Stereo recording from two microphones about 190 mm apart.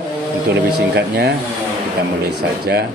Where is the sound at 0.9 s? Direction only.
65° right (ahead or behind).